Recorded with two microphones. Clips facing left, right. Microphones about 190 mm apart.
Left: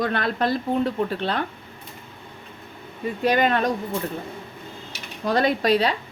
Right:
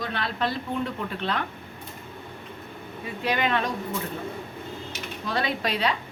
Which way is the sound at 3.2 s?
45° left (ahead or behind).